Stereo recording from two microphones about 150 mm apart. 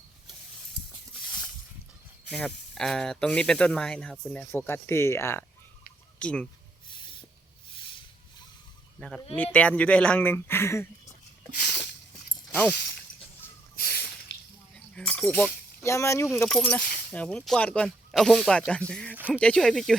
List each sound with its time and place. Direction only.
2.3 s speech: 5° left (ahead or behind)
6.8 s train: 35° left (ahead or behind)
9.0 s speech: 5° left (ahead or behind)
13.7 s drip: 90° left
14.9 s speech: 10° left (ahead or behind)
16.5 s speech: 5° left (ahead or behind)